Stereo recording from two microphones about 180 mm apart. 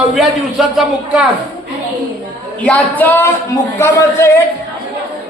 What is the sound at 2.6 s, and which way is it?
Music, 10° left (ahead or behind).